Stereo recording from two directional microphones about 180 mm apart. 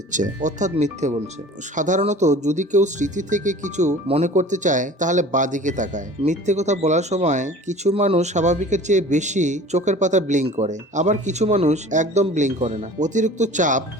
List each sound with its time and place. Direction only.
0.1 s speech: 45° right (ahead or behind)